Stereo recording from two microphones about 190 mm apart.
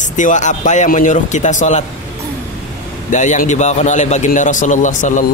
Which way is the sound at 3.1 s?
40° left (ahead or behind).